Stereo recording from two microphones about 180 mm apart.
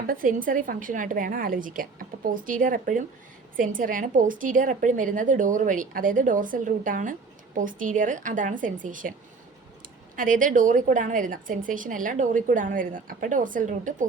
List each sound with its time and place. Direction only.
0.1 s a woman's voice: 50° right (ahead or behind)
10.2 s a woman's voice: 50° right (ahead or behind)